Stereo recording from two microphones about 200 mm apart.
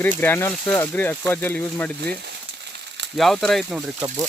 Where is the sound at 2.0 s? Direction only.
55° right (ahead or behind).